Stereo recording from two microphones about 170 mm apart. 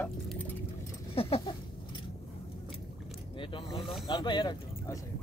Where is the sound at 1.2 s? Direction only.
35° left (ahead or behind).